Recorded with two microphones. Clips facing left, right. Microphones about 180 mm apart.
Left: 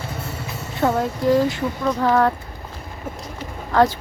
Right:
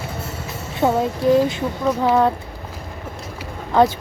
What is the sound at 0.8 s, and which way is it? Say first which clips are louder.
A woman's voice: right 2 dB; 20° right (ahead or behind).